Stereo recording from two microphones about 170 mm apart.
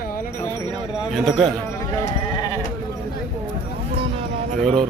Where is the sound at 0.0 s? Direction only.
55° left (ahead or behind).